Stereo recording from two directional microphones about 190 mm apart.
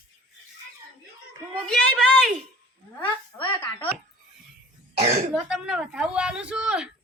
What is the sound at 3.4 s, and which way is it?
Speech, 10° left (ahead or behind).